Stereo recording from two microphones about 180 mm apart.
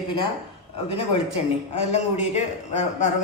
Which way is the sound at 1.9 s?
40° left (ahead or behind).